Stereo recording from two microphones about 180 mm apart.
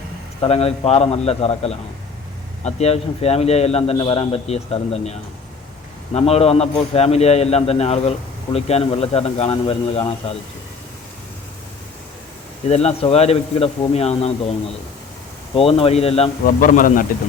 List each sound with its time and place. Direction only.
0.4 s a man's voice: 35° left (ahead or behind)
6.1 s a man's voice: 35° left (ahead or behind)
12.6 s a man's voice: 35° left (ahead or behind)
15.5 s a man's voice: 30° left (ahead or behind)
16.6 s speech: 50° left (ahead or behind)